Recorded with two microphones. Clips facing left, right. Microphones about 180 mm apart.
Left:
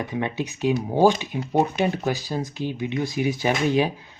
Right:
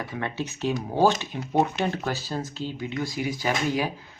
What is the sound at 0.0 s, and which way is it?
Speech, 20° left (ahead or behind).